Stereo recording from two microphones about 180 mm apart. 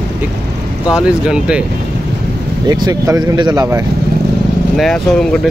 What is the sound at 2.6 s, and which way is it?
Speech, 20° right (ahead or behind).